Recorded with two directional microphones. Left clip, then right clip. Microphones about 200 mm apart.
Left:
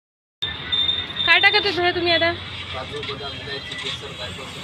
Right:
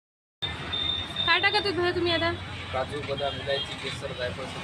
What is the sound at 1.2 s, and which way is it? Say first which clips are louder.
Speech: left 8 dB; centre (ahead or behind).